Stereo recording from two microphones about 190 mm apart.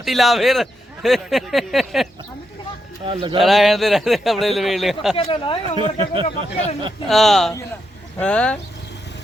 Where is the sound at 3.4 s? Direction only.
Centre (ahead or behind).